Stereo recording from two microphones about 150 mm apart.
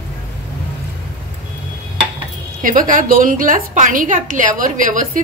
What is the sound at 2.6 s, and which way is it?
A woman's voice, 65° right (ahead or behind).